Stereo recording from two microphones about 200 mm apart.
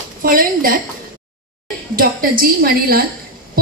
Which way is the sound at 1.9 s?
45° right (ahead or behind).